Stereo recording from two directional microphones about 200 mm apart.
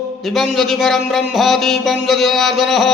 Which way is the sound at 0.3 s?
Centre (ahead or behind).